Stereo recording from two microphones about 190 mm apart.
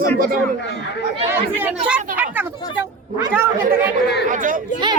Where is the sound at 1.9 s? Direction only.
5° right (ahead or behind).